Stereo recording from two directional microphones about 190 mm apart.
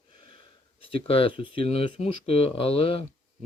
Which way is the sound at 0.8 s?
30° left (ahead or behind).